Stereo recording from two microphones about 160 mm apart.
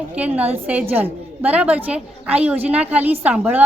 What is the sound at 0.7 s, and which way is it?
A woman's voice, 10° right (ahead or behind).